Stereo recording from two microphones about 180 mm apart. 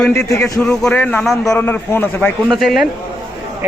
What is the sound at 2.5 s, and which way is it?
Speech, centre (ahead or behind).